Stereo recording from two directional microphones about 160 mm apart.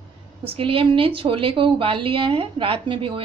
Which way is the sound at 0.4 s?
35° right (ahead or behind).